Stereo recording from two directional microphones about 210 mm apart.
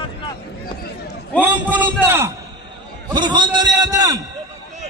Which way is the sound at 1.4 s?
10° right (ahead or behind).